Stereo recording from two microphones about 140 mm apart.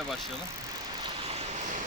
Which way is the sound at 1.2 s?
50° right (ahead or behind).